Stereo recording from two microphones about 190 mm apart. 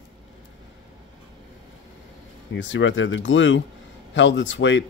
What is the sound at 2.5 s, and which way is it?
Speech, 80° left.